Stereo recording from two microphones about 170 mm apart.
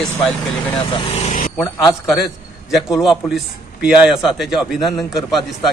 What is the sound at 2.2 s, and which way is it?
A man's voice, centre (ahead or behind).